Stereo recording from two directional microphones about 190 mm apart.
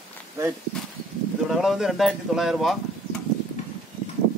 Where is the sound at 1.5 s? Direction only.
Centre (ahead or behind).